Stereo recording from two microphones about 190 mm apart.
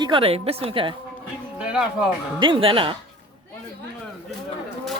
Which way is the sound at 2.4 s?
25° right (ahead or behind).